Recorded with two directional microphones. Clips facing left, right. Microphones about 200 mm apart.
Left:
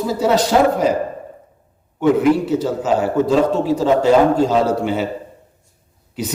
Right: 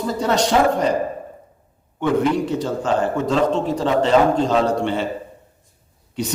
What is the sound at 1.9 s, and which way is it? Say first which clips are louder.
A man's voice: left 4 dB; 5° left (ahead or behind).